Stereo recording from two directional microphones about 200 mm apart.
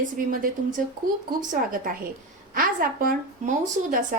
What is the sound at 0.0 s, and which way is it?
Speech, 45° right (ahead or behind).